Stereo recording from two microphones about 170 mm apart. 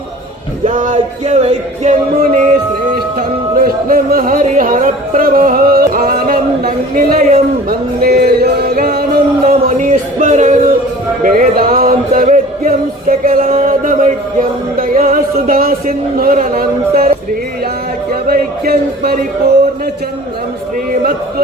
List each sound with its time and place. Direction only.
0.6 s music: 50° right (ahead or behind)
6.7 s chant: 55° right (ahead or behind)
9.4 s music: 40° right (ahead or behind)
18.1 s chant: 65° right (ahead or behind)